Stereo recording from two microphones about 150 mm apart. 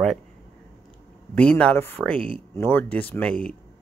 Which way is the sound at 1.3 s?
10° left (ahead or behind).